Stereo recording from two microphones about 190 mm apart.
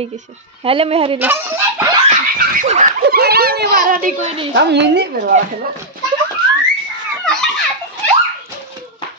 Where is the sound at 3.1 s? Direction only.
55° right (ahead or behind).